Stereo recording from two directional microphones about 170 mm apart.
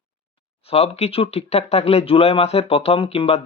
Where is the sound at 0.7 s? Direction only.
40° left (ahead or behind).